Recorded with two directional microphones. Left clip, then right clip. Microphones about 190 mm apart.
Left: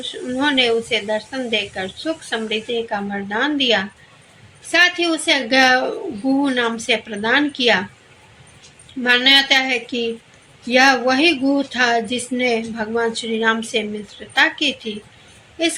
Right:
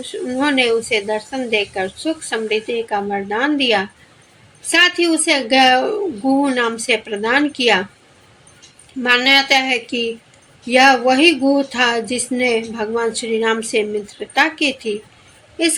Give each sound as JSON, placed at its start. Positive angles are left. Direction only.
{"t": 0.0, "sound": "a woman's voice", "side_deg": -45}
{"t": 9.0, "sound": "a woman's voice", "side_deg": -45}